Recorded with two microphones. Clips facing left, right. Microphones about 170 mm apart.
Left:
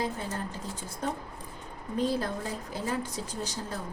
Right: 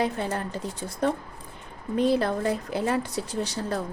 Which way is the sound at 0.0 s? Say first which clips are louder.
Right 6 dB; 70° right (ahead or behind).